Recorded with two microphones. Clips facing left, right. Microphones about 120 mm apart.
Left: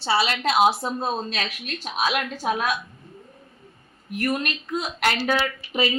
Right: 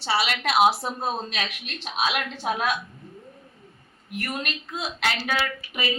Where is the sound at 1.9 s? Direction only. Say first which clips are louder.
Left 2 dB; 40° left (ahead or behind).